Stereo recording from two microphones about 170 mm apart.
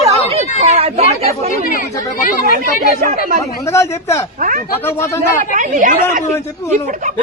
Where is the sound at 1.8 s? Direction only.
55° left (ahead or behind).